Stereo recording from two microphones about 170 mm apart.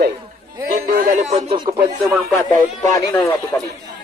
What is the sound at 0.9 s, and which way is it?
Speech, 50° right (ahead or behind).